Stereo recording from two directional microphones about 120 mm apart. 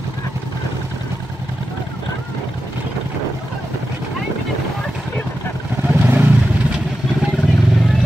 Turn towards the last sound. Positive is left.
turn(degrees=0)  # may be behind; listen again after turning